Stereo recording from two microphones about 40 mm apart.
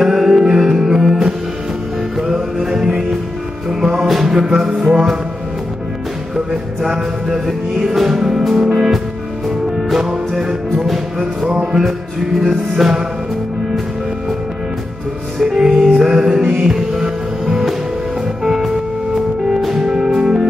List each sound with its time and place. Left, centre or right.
0.0 s music: centre
4.1 s music: centre
6.3 s music: centre
11.6 s music: centre
15.4 s music: centre
19.8 s music: centre